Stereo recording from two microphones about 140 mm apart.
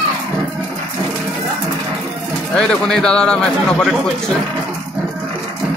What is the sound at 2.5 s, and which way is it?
A man's voice, 5° left (ahead or behind).